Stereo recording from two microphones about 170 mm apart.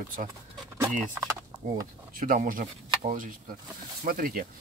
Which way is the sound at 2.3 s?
50° right (ahead or behind).